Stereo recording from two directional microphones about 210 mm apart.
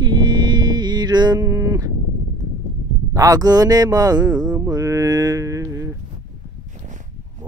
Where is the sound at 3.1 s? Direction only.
15° right (ahead or behind).